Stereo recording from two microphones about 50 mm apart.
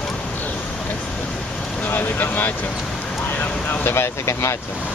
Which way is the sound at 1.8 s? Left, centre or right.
Left.